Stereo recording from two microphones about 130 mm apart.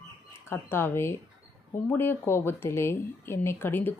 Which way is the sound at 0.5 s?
20° left (ahead or behind).